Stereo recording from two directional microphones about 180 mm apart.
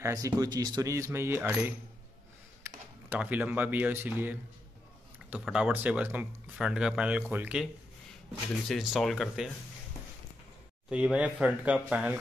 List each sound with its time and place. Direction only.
0.0 s speech: 20° right (ahead or behind)
3.1 s speech: 10° right (ahead or behind)
8.6 s speech: centre (ahead or behind)
10.9 s speech: 5° right (ahead or behind)